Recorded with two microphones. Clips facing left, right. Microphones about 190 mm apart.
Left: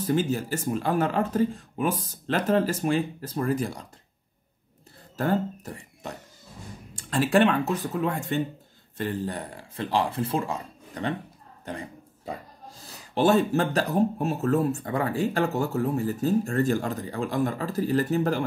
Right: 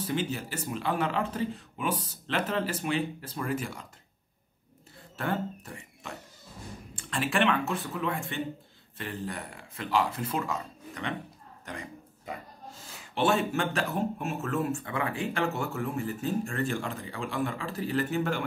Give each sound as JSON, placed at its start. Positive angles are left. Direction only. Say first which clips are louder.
{"t": 0.0, "sound": "speech", "louder": "left 6 dB", "side_deg": 45}
{"t": 5.1, "sound": "speech", "louder": "left 6 dB", "side_deg": 40}
{"t": 11.6, "sound": "a sound", "louder": "left 5 dB", "side_deg": 30}
{"t": 12.8, "sound": "speech", "louder": "left 5 dB", "side_deg": 35}